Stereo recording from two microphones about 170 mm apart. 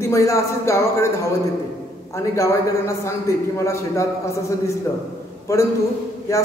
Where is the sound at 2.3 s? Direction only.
15° left (ahead or behind).